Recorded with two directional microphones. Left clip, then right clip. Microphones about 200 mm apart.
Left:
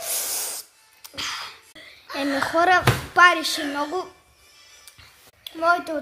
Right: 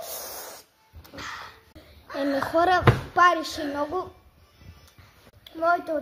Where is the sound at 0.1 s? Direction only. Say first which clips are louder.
Left 8 dB; 45° left (ahead or behind).